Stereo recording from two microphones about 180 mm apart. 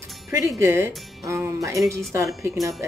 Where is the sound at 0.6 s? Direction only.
15° right (ahead or behind).